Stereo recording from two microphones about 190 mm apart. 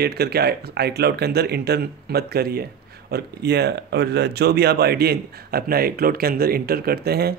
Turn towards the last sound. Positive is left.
turn(degrees=-55)  # may be behind; listen again after turning